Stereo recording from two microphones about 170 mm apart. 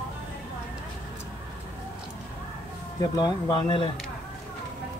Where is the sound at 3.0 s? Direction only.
25° left (ahead or behind).